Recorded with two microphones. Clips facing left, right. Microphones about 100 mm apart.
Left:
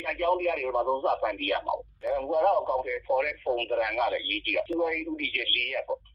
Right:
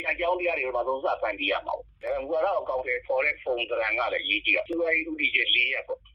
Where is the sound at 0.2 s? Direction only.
25° left (ahead or behind).